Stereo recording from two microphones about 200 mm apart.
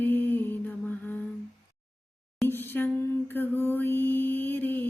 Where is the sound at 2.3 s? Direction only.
10° left (ahead or behind).